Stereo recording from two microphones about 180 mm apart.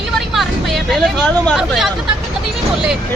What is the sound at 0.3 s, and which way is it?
Speech, centre (ahead or behind).